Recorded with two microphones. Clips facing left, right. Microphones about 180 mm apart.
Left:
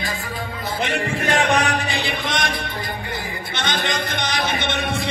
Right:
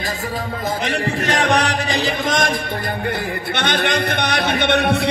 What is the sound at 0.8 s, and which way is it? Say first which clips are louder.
Music: even; 40° right (ahead or behind).